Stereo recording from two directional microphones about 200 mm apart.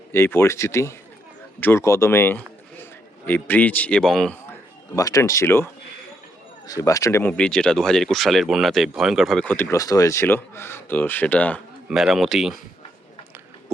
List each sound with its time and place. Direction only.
0.1 s a man's voice: 10° left (ahead or behind)
4.9 s speech: 15° left (ahead or behind)
6.7 s speech: 15° left (ahead or behind); by 12.5 s centre (ahead or behind)